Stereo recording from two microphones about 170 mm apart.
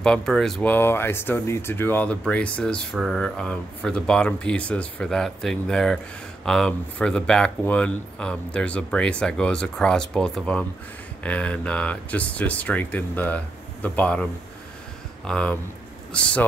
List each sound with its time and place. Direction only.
0.0 s speech: 5° left (ahead or behind)
15.2 s speech: 5° left (ahead or behind)